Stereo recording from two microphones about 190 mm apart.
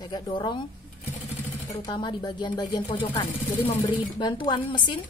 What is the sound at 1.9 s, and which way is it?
A woman's voice, 25° left (ahead or behind).